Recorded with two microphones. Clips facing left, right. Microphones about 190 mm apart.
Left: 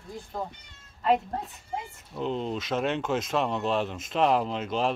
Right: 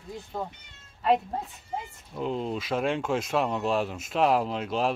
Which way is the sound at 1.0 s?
5° right (ahead or behind).